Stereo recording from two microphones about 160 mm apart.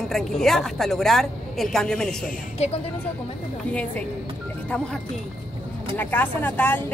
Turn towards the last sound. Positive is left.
turn(degrees=10)  # may be behind; listen again after turning